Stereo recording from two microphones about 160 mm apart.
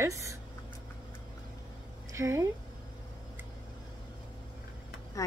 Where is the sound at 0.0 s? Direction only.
20° right (ahead or behind).